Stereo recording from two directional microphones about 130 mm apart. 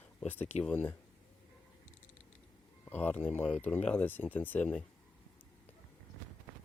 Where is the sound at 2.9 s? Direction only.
15° left (ahead or behind).